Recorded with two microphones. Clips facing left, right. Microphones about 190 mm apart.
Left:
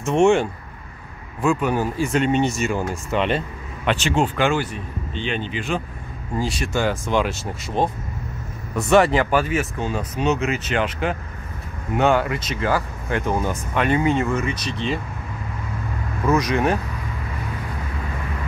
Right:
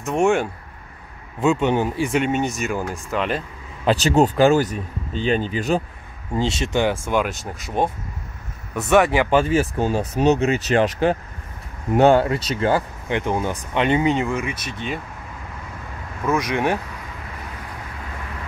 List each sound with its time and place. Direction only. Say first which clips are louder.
0.0 s speech: left 2 dB; centre (ahead or behind)
1.4 s speech: right 2 dB; 25° right (ahead or behind); by 3.4 s centre (ahead or behind)
3.8 s speech: right 4 dB; 35° right (ahead or behind)
6.3 s speech: right 2 dB; 25° right (ahead or behind); by 9.3 s 10° right (ahead or behind)
9.3 s speech: right 3 dB; 30° right (ahead or behind); by 14.9 s 5° right (ahead or behind)
16.3 s speech: left 1 dB; 15° right (ahead or behind)